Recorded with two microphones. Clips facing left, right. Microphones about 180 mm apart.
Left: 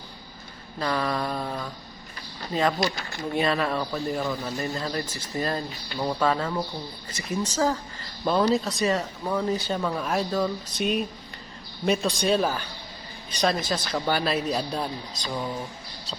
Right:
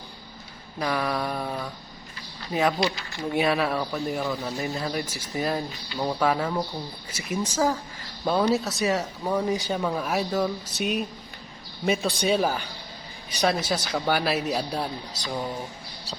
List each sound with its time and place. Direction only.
0.8 s speech: 10° right (ahead or behind)
15.1 s speech: 90° right